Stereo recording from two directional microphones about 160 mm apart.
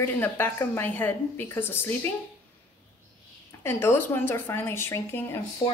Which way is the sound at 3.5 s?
15° left (ahead or behind).